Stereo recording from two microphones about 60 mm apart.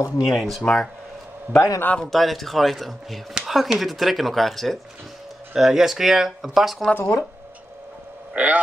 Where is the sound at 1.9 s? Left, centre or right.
Centre.